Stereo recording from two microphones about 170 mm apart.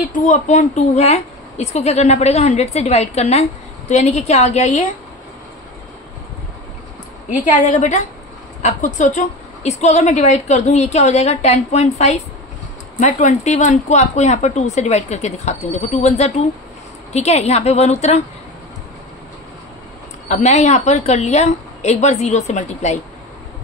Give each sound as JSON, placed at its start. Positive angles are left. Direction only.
{"t": 0.1, "sound": "a woman's voice", "side_deg": 50}
{"t": 7.2, "sound": "a woman's voice", "side_deg": 45}
{"t": 20.2, "sound": "a woman's voice", "side_deg": 45}